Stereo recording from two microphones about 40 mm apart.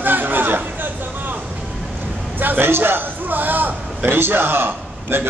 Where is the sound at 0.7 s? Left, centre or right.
Right.